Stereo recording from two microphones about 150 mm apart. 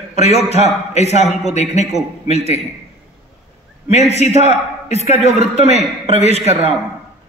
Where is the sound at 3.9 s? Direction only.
45° left (ahead or behind).